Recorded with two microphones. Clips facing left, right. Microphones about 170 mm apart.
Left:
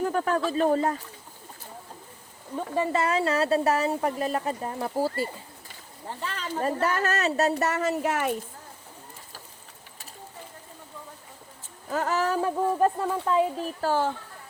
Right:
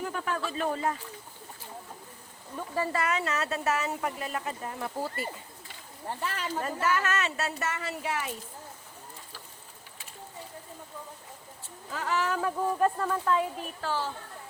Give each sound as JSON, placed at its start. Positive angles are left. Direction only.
{"t": 0.0, "sound": "speech", "side_deg": 40}
{"t": 2.6, "sound": "speech", "side_deg": 20}
{"t": 6.6, "sound": "speech", "side_deg": 35}
{"t": 11.9, "sound": "speech", "side_deg": 45}
{"t": 13.8, "sound": "speech", "side_deg": 50}